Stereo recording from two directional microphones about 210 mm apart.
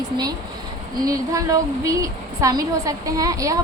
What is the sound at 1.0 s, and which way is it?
A woman's voice, 15° right (ahead or behind).